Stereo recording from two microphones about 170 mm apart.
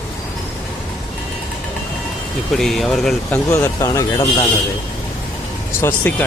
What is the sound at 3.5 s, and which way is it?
Speech, 20° left (ahead or behind).